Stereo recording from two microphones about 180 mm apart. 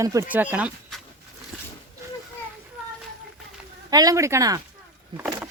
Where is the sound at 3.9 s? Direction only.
20° right (ahead or behind).